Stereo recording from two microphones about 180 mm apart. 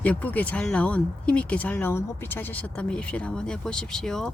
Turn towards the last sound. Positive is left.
turn(degrees=5)  # may be behind; listen again after turning